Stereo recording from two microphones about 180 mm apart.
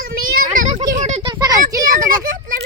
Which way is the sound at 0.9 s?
40° right (ahead or behind).